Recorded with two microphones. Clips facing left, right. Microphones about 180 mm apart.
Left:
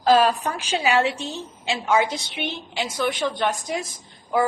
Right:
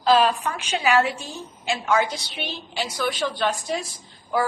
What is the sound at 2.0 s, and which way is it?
A woman's voice, 20° left (ahead or behind).